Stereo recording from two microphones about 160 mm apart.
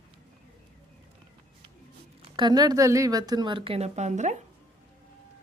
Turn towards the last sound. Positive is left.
turn(degrees=-45)  # may be behind; listen again after turning